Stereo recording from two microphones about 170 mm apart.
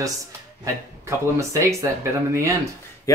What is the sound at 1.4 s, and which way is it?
Speech, 15° right (ahead or behind).